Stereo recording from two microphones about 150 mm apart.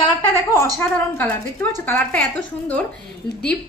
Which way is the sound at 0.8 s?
15° left (ahead or behind).